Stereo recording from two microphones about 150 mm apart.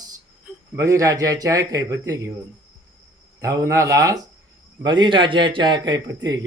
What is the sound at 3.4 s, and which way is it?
A man's voice, 20° right (ahead or behind).